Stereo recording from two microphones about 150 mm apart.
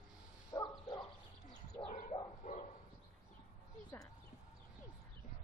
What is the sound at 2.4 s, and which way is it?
Bow-wow, 50° left (ahead or behind).